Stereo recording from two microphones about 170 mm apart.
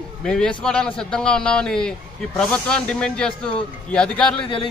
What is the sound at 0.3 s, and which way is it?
Speech, 5° left (ahead or behind).